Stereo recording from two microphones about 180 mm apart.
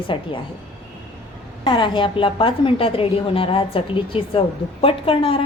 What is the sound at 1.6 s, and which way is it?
A woman's voice, 25° left (ahead or behind).